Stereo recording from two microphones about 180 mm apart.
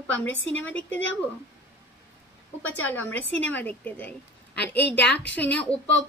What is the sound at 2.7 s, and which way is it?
A woman's voice, 10° left (ahead or behind).